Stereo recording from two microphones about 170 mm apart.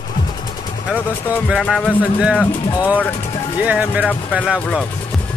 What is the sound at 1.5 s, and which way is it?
Speech, centre (ahead or behind).